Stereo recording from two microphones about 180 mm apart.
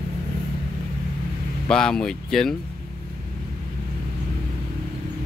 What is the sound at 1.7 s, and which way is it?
Speech, 5° left (ahead or behind).